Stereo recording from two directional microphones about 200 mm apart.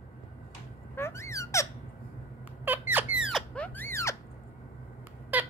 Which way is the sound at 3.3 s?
5° left (ahead or behind).